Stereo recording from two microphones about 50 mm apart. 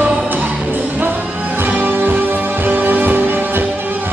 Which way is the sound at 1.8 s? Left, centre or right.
Right.